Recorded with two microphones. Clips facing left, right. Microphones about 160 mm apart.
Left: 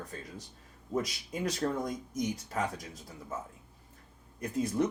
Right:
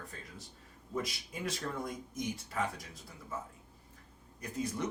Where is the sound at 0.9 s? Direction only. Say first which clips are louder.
Left 5 dB; 40° left (ahead or behind).